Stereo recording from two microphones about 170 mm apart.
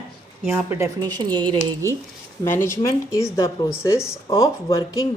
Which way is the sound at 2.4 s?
15° left (ahead or behind).